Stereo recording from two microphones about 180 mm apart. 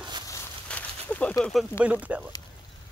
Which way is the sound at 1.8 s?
5° right (ahead or behind).